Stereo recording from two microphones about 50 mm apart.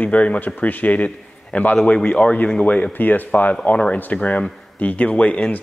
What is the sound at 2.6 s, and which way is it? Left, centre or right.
Speech, left.